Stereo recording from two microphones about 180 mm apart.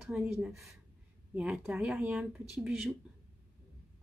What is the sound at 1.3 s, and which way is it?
Speech, 5° right (ahead or behind).